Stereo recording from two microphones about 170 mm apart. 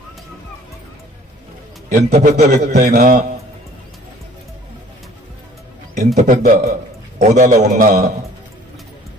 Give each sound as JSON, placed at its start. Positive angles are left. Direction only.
{"t": 1.9, "sound": "a man's voice", "side_deg": -60}
{"t": 2.1, "sound": "a man's voice", "side_deg": -40}
{"t": 2.5, "sound": "a man's voice", "side_deg": -65}
{"t": 6.1, "sound": "a man's voice", "side_deg": -55}